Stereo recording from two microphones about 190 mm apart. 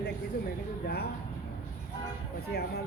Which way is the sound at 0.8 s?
55° left (ahead or behind).